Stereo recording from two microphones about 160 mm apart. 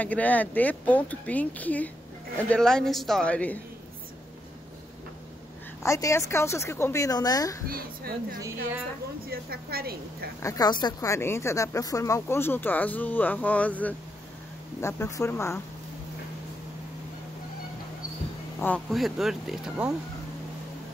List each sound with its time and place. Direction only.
0.0 s a man's voice: 10° left (ahead or behind)
5.8 s a woman's voice: 20° left (ahead or behind)
7.6 s a woman's voice: 65° right (ahead or behind)
10.4 s speech: 25° left (ahead or behind)
18.9 s a man's voice: centre (ahead or behind)